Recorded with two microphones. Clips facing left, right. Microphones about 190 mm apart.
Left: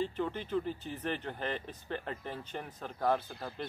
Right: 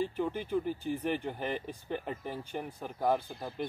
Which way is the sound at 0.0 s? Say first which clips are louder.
Right 2 dB; 10° right (ahead or behind).